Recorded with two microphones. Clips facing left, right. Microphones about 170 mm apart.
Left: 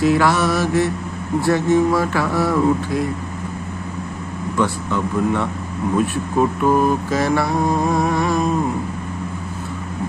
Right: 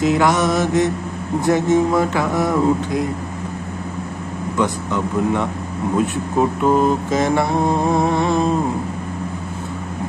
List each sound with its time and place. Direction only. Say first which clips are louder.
0.0 s mantra: even; 20° right (ahead or behind)
4.6 s speech: even; 15° right (ahead or behind)
6.6 s mantra: right 1 dB; 20° right (ahead or behind)